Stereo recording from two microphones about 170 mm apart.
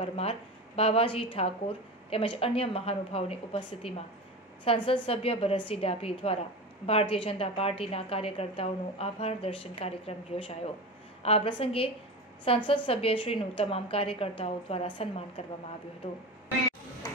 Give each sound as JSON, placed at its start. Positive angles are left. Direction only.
{"t": 0.0, "sound": "a woman's voice", "side_deg": 35}